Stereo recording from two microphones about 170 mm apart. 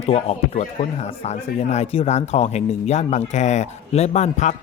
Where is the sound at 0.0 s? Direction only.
40° left (ahead or behind).